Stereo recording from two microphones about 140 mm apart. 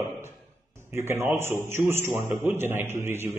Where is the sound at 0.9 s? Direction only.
15° right (ahead or behind).